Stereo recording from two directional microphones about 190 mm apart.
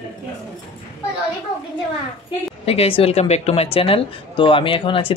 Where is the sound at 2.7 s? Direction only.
30° left (ahead or behind).